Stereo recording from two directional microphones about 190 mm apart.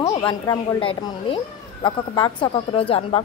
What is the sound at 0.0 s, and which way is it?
A woman's voice, 25° left (ahead or behind).